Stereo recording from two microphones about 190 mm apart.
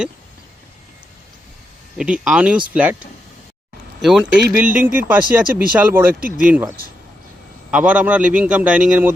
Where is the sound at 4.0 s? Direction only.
Centre (ahead or behind).